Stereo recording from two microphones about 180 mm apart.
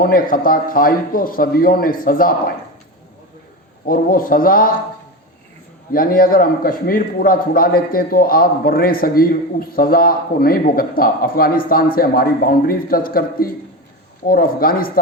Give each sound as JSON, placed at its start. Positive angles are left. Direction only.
{"t": 0.0, "sound": "a man's voice", "side_deg": 55}
{"t": 3.8, "sound": "a man's voice", "side_deg": 50}
{"t": 5.9, "sound": "a man's voice", "side_deg": 55}